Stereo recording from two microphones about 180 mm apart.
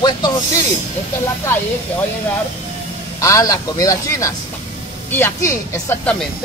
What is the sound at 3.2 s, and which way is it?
Speech, 15° left (ahead or behind).